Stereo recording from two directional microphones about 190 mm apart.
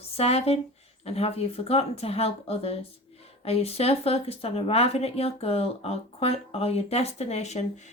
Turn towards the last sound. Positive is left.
turn(degrees=35)  # may be behind; listen again after turning